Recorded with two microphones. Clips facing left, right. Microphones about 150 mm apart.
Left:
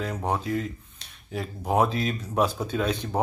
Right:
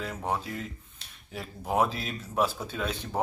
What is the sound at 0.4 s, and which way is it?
A man's voice, centre (ahead or behind).